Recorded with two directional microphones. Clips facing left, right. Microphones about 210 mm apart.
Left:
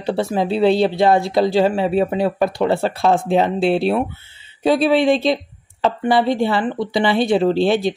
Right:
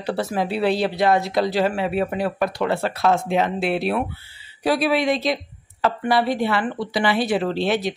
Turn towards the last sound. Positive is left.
turn(degrees=30)  # may be behind; listen again after turning